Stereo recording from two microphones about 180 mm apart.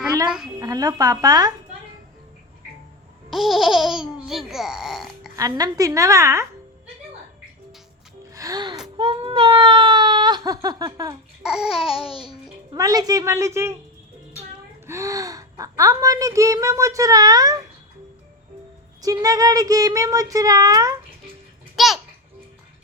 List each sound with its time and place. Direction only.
0.3 s speech: centre (ahead or behind)
0.6 s speech: 20° right (ahead or behind)
3.2 s speech: centre (ahead or behind)
5.4 s speech: 20° right (ahead or behind)
8.4 s speech: 20° right (ahead or behind)
11.4 s speech: 5° right (ahead or behind)
12.2 s a child's voice: 20° right (ahead or behind)
14.8 s speech: 15° right (ahead or behind)
19.0 s speech: 20° right (ahead or behind)
21.8 s speech: centre (ahead or behind)